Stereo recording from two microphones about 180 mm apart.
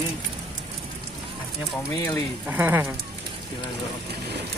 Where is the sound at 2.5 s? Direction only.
10° right (ahead or behind).